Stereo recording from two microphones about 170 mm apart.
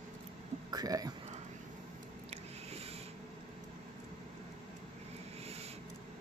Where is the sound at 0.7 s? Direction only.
20° right (ahead or behind).